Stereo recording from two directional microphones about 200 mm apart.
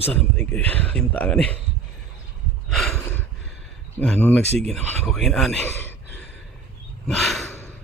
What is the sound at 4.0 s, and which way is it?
Speech, 5° left (ahead or behind).